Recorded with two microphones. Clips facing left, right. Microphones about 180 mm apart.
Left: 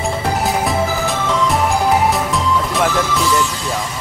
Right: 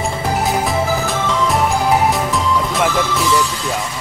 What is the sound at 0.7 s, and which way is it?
Music, centre (ahead or behind).